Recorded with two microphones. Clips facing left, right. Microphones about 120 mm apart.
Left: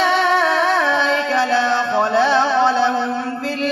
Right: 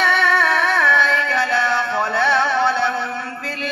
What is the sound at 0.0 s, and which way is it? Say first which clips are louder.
Music: left 2 dB; 20° left (ahead or behind).